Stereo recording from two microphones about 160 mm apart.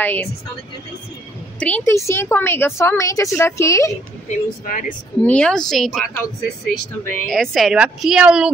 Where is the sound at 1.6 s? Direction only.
10° left (ahead or behind).